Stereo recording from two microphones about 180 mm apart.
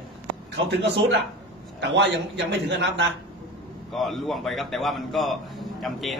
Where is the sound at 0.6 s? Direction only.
70° right (ahead or behind).